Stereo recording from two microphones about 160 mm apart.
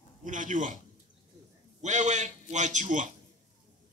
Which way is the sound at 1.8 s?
50° right (ahead or behind).